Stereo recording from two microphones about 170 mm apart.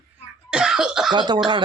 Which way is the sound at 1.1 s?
25° right (ahead or behind).